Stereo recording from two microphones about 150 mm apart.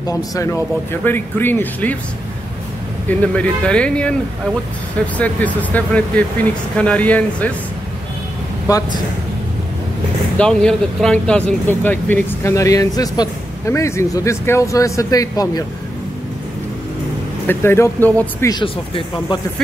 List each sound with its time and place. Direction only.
0.0 s speech: 20° left (ahead or behind)
3.1 s speech: 10° left (ahead or behind)
8.7 s speech: 25° left (ahead or behind)
10.3 s speech: 5° left (ahead or behind); by 15.6 s 25° left (ahead or behind)
17.5 s speech: 15° left (ahead or behind)
18.5 s speech: 30° left (ahead or behind)